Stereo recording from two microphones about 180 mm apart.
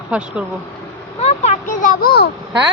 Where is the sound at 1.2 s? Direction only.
35° left (ahead or behind); by 2.3 s 60° left (ahead or behind).